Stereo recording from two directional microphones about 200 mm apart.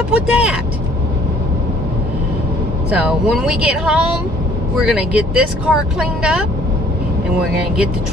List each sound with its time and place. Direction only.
0.1 s speech: 5° right (ahead or behind)
2.9 s speech: 5° right (ahead or behind)